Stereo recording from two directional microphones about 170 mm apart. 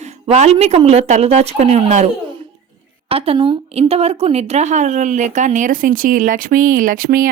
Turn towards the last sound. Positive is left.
turn(degrees=-55)  # may be behind; listen again after turning